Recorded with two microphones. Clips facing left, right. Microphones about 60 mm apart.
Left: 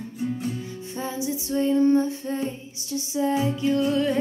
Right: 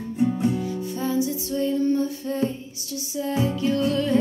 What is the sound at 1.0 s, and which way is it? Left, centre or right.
Female singing, left.